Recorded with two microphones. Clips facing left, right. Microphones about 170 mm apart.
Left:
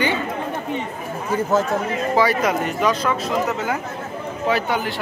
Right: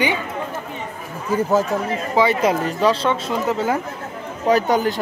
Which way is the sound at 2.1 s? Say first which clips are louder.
Right 2 dB; 25° right (ahead or behind).